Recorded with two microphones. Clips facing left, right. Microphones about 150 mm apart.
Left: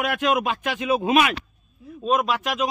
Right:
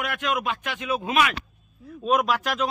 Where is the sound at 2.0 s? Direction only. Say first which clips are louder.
Even; centre (ahead or behind).